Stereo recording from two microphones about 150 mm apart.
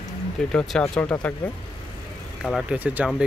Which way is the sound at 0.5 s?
5° left (ahead or behind).